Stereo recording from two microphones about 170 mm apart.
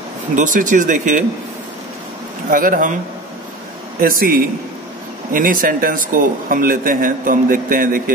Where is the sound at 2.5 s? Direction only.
55° right (ahead or behind).